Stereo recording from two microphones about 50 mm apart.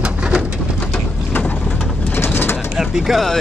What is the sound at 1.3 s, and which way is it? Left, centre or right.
Vehicle, left.